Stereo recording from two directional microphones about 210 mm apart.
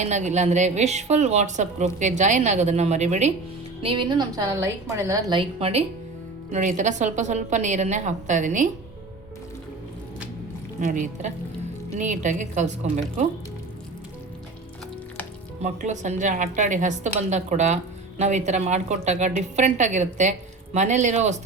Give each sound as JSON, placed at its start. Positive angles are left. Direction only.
{"t": 0.0, "sound": "a woman's voice", "side_deg": -35}
{"t": 3.8, "sound": "a woman's voice", "side_deg": -20}
{"t": 10.8, "sound": "a woman's voice", "side_deg": -40}
{"t": 15.6, "sound": "a woman's voice", "side_deg": -35}